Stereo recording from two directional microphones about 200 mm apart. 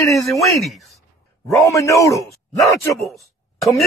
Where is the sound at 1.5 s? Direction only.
15° left (ahead or behind).